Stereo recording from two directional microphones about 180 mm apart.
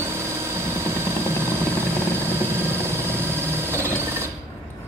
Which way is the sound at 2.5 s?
15° right (ahead or behind).